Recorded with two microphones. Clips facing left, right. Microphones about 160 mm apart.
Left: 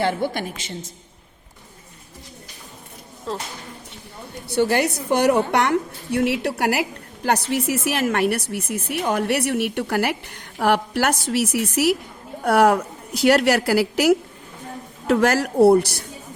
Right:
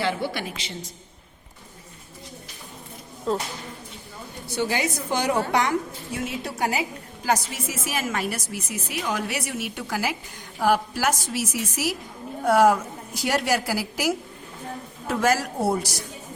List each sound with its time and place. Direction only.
0.0 s a woman's voice: 50° left (ahead or behind)
4.4 s a woman's voice: 65° left (ahead or behind)